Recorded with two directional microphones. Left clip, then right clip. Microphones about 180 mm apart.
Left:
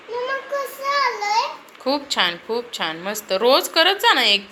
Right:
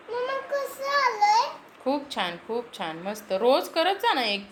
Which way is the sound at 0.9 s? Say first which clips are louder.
Left 1 dB; 30° right (ahead or behind).